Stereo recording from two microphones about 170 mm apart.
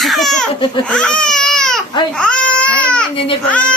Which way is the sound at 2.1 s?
5° left (ahead or behind).